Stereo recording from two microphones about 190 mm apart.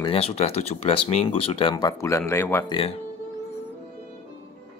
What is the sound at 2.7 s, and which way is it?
Speech, 30° left (ahead or behind).